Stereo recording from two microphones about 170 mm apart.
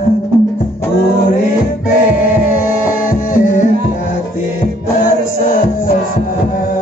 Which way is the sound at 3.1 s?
50° left (ahead or behind).